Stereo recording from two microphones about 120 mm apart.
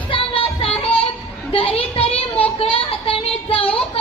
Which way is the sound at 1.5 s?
50° left (ahead or behind).